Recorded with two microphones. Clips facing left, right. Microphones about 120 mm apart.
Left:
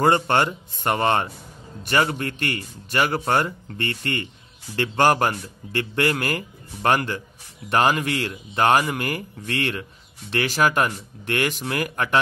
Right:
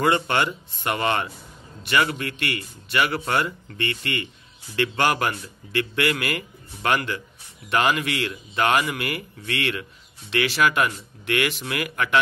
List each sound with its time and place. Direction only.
0.0 s speech: 40° left (ahead or behind)